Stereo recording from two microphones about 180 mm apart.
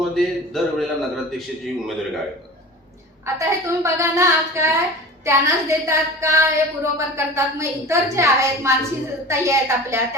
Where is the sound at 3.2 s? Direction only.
15° right (ahead or behind).